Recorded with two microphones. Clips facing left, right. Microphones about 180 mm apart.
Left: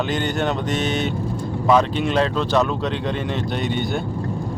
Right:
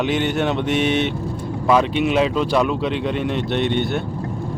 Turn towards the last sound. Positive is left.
turn(degrees=0)  # may be behind; listen again after turning